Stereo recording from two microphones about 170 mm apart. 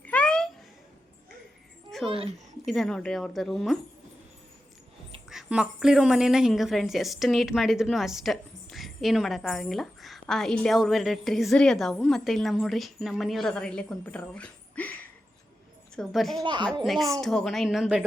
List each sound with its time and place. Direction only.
0.0 s a sound: 10° left (ahead or behind)
2.0 s speech: 30° right (ahead or behind)
2.6 s a woman's voice: centre (ahead or behind)
5.3 s a woman's voice: 5° right (ahead or behind)
16.0 s a woman's voice: centre (ahead or behind)
16.4 s speech: 25° right (ahead or behind)
16.8 s a woman's voice: centre (ahead or behind)